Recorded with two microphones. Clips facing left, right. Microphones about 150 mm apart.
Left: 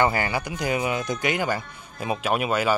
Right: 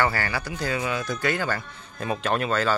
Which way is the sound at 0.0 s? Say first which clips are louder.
Left 3 dB; 20° left (ahead or behind).